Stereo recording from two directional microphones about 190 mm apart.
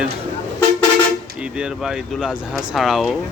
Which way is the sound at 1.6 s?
5° right (ahead or behind).